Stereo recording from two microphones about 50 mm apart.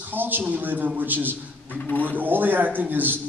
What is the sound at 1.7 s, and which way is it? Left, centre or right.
Speech, left.